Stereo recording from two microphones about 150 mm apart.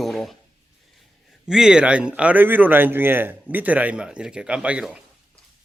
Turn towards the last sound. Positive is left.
turn(degrees=-5)  # may be behind; listen again after turning